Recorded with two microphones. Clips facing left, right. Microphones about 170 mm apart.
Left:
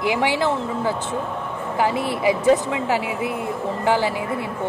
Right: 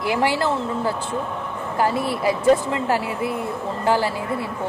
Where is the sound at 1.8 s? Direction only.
15° left (ahead or behind).